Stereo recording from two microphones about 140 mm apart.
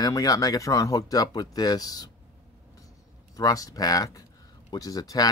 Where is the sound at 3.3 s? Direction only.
25° left (ahead or behind).